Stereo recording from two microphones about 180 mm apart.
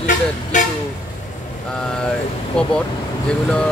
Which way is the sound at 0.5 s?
45° left (ahead or behind).